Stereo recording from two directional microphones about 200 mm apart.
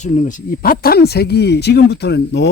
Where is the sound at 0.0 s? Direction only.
35° left (ahead or behind).